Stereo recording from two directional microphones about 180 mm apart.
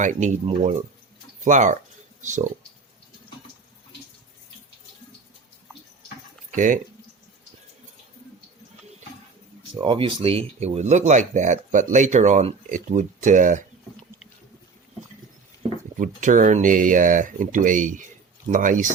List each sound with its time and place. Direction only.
0.0 s speech: 45° right (ahead or behind)
9.8 s speech: 30° right (ahead or behind); by 13.7 s 45° right (ahead or behind)
16.0 s speech: 45° right (ahead or behind)